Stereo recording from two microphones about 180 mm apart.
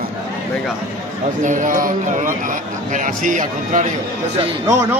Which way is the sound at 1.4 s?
45° right (ahead or behind).